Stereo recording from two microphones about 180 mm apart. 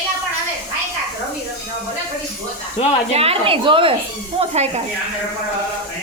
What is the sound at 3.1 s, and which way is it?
A woman's voice, 35° right (ahead or behind).